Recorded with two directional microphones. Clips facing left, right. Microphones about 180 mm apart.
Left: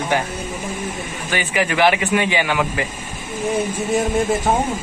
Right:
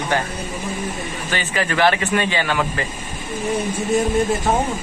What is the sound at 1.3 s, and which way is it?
Speech, 15° left (ahead or behind).